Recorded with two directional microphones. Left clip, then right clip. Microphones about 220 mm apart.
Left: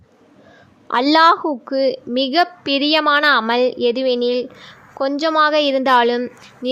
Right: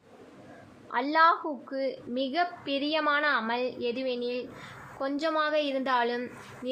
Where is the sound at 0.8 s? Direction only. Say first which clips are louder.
Left 11 dB; 55° left (ahead or behind).